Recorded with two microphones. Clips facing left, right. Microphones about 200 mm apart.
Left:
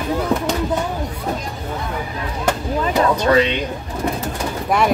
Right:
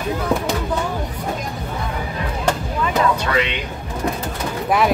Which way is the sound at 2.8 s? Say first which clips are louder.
Left 3 dB; 35° left (ahead or behind).